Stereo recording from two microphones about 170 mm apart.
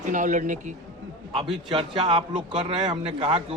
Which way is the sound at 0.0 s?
45° right (ahead or behind).